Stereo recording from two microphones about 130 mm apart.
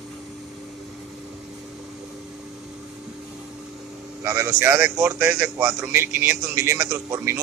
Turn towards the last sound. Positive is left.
turn(degrees=-20)  # may be behind; listen again after turning